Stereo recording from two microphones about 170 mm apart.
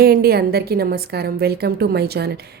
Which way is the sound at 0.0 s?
65° right (ahead or behind).